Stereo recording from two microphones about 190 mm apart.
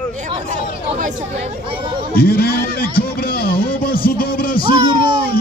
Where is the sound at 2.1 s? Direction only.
50° left (ahead or behind).